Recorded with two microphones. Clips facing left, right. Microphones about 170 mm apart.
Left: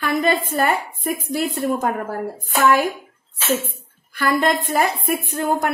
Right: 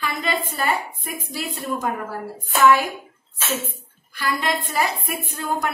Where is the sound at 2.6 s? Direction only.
45° left (ahead or behind).